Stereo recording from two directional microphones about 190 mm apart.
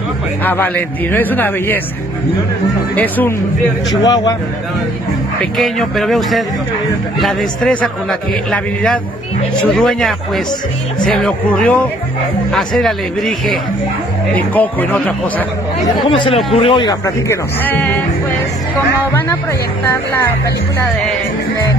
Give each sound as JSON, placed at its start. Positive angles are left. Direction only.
{"t": 0.4, "sound": "speech", "side_deg": 10}
{"t": 3.0, "sound": "speech", "side_deg": 10}
{"t": 3.9, "sound": "a man's voice", "side_deg": 20}
{"t": 5.4, "sound": "a man's voice", "side_deg": 0}
{"t": 16.1, "sound": "a man's voice", "side_deg": 30}
{"t": 19.9, "sound": "speech", "side_deg": 10}